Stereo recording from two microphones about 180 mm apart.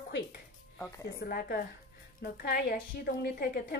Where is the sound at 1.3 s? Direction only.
55° left (ahead or behind).